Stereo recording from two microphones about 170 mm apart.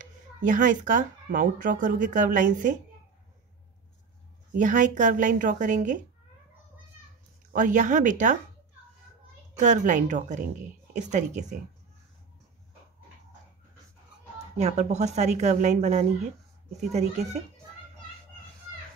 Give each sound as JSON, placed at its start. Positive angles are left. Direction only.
{"t": 0.0, "sound": "speech", "side_deg": -50}
{"t": 4.6, "sound": "speech", "side_deg": -50}
{"t": 7.5, "sound": "speech", "side_deg": -50}
{"t": 9.6, "sound": "speech", "side_deg": -45}
{"t": 14.6, "sound": "speech", "side_deg": -45}